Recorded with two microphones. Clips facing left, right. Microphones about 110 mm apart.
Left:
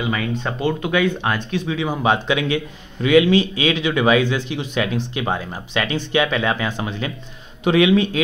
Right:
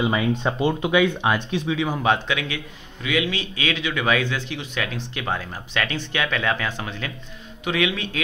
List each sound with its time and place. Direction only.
0.0 s speech: 20° right (ahead or behind)
0.9 s speech: 10° right (ahead or behind)
1.9 s speech: 10° left (ahead or behind)
2.3 s speech: 30° left (ahead or behind)
3.3 s speech: 25° left (ahead or behind)
7.6 s a man's voice: 30° left (ahead or behind)